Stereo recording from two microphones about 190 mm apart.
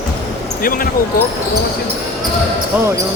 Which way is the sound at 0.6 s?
50° left (ahead or behind).